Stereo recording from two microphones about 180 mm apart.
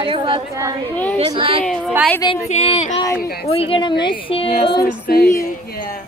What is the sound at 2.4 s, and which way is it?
Speech, 40° left (ahead or behind).